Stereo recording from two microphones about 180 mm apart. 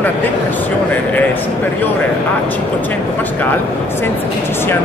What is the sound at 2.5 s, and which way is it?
Speech, 10° left (ahead or behind).